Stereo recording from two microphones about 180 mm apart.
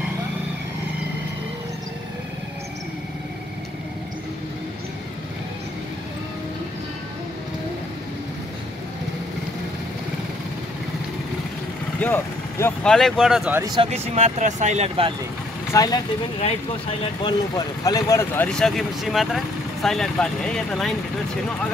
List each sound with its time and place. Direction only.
12.0 s vehicle: 10° left (ahead or behind)
12.9 s speech: centre (ahead or behind)
13.6 s speech: 25° right (ahead or behind)
13.9 s speech: 35° right (ahead or behind)
15.7 s speech: 20° left (ahead or behind)
17.0 s speech: 25° left (ahead or behind); by 20.9 s 5° left (ahead or behind)